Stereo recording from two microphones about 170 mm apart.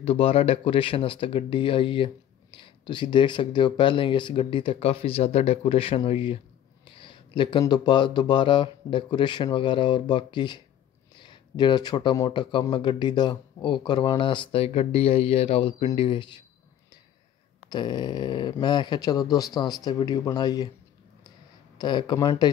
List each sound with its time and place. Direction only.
0.0 s speech: 35° left (ahead or behind)
17.6 s speech: 25° left (ahead or behind)
21.7 s speech: 25° left (ahead or behind)